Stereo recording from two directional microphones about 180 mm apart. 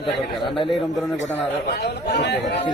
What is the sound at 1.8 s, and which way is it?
Speech, 70° left (ahead or behind).